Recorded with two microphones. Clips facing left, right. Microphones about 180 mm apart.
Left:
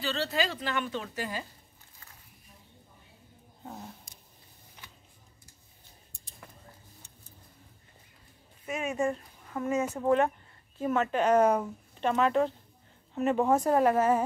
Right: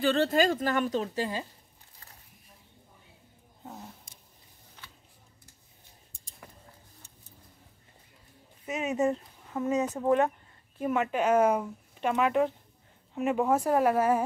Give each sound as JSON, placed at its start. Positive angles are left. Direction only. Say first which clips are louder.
{"t": 0.0, "sound": "a woman's voice", "louder": "right 7 dB", "side_deg": -50}
{"t": 4.8, "sound": "a sound", "louder": "right 1 dB", "side_deg": 15}
{"t": 8.6, "sound": "speech", "louder": "right 2 dB", "side_deg": -20}